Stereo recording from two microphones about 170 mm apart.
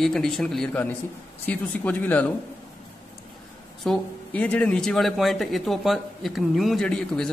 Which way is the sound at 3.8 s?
5° left (ahead or behind).